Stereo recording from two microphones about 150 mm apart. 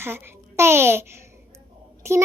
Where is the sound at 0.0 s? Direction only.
15° right (ahead or behind).